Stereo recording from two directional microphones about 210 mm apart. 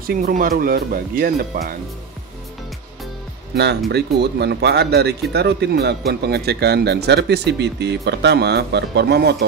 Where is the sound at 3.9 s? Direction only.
50° right (ahead or behind).